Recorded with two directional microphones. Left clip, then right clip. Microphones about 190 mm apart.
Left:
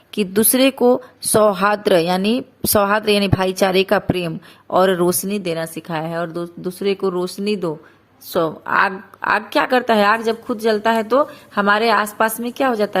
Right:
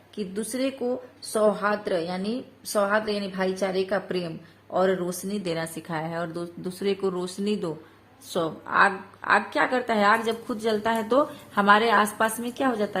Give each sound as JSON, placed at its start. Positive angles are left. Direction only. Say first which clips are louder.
{"t": 0.1, "sound": "speech", "louder": "left 14 dB", "side_deg": 40}
{"t": 5.4, "sound": "a woman's voice", "louder": "left 7 dB", "side_deg": 15}